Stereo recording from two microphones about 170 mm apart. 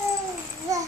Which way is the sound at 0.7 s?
20° right (ahead or behind).